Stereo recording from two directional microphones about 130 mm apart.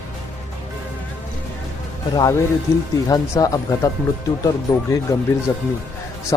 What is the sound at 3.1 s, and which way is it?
Speech, 30° left (ahead or behind).